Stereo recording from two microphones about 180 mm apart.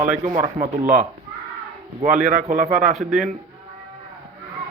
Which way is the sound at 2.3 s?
45° right (ahead or behind).